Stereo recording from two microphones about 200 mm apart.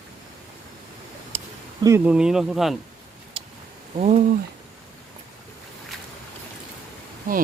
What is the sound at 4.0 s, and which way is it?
Speech, 35° right (ahead or behind).